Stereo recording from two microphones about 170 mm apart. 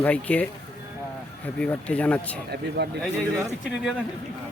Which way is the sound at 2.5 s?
70° right (ahead or behind).